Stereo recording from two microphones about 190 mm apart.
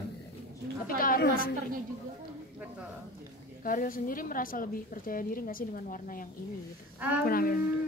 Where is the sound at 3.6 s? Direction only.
45° left (ahead or behind).